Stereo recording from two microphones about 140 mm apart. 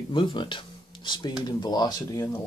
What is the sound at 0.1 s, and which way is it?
Speech, 35° left (ahead or behind).